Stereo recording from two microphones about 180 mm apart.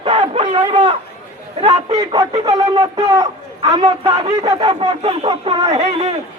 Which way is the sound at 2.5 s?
20° right (ahead or behind).